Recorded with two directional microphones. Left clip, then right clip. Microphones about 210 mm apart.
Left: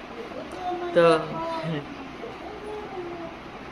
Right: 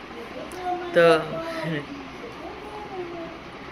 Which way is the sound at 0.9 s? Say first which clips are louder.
Right 2 dB; 10° left (ahead or behind).